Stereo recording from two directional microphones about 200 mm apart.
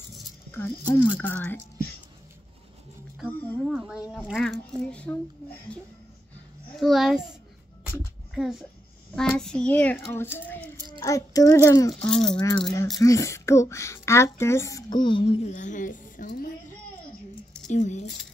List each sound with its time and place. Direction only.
0.5 s a woman's voice: 10° left (ahead or behind)
3.3 s a woman's voice: 10° left (ahead or behind)
3.7 s a child's voice: 5° right (ahead or behind)
6.8 s a child's voice: centre (ahead or behind)
8.4 s a child's voice: centre (ahead or behind); by 11.9 s 15° left (ahead or behind)
12.1 s a child's voice: 5° left (ahead or behind)
12.4 s rattle: 20° left (ahead or behind)
13.0 s a woman's voice: 15° left (ahead or behind); by 18.0 s 35° left (ahead or behind)